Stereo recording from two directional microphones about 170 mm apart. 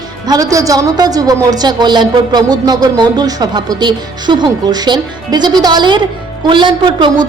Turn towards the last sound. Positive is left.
turn(degrees=-30)  # may be behind; listen again after turning